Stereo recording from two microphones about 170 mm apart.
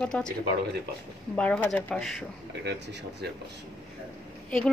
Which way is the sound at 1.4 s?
5° left (ahead or behind).